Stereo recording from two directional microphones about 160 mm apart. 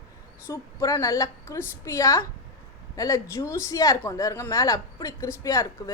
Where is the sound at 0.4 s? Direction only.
20° left (ahead or behind).